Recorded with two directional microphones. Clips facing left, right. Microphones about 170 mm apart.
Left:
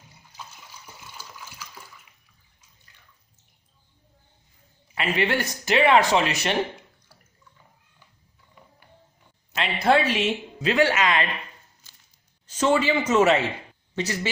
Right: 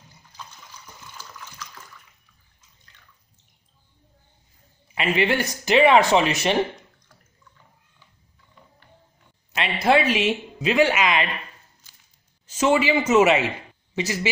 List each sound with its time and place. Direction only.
1.1 s water: 10° left (ahead or behind)
4.9 s speech: 20° right (ahead or behind)
8.6 s music: 5° left (ahead or behind)
9.6 s speech: 10° right (ahead or behind)
12.4 s speech: 10° right (ahead or behind)